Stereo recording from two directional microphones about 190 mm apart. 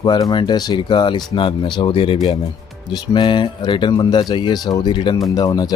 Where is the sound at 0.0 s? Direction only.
20° left (ahead or behind).